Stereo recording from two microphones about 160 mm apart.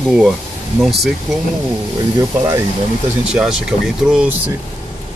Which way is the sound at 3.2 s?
5° right (ahead or behind).